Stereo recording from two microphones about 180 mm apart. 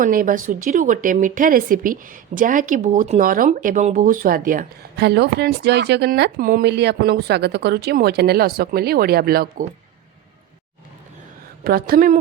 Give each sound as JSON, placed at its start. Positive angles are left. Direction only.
{"t": 0.0, "sound": "speech", "side_deg": -50}
{"t": 11.6, "sound": "speech", "side_deg": -55}